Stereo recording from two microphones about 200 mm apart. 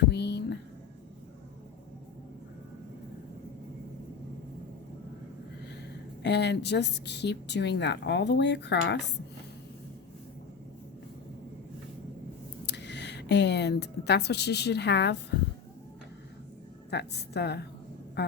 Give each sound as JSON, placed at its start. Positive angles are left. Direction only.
{"t": 0.1, "sound": "a sound", "side_deg": 55}
{"t": 6.2, "sound": "a woman's voice", "side_deg": 60}
{"t": 12.6, "sound": "a woman's voice", "side_deg": 60}
{"t": 16.9, "sound": "a woman's voice", "side_deg": 55}
{"t": 18.2, "sound": "vehicle", "side_deg": 55}